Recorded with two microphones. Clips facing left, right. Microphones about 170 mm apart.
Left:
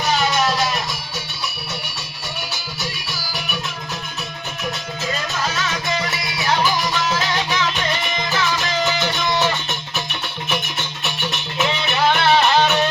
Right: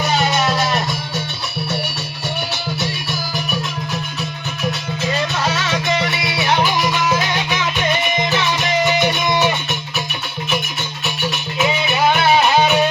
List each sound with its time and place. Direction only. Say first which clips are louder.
5.9 s music: right 4 dB; 20° right (ahead or behind)
11.0 s music: right 5 dB; 5° right (ahead or behind)